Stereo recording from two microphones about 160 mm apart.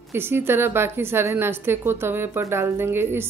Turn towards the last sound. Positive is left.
turn(degrees=-15)  # may be behind; listen again after turning